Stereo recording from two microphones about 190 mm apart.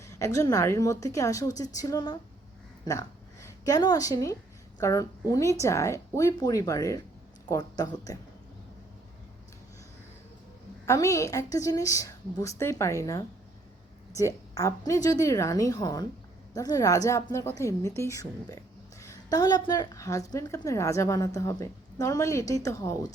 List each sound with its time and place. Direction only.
0.0 s a woman's voice: 15° left (ahead or behind)
10.8 s a woman's voice: 15° left (ahead or behind)